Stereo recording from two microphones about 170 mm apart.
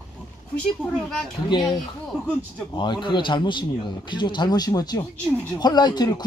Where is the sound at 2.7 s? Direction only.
25° left (ahead or behind).